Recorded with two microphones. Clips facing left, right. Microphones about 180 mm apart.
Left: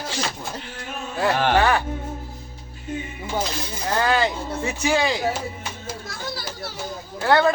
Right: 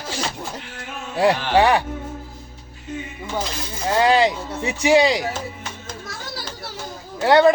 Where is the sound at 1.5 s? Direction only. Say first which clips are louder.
Right 5 dB; 15° right (ahead or behind).